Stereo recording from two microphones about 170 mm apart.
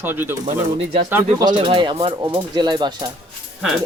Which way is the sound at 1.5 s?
30° right (ahead or behind).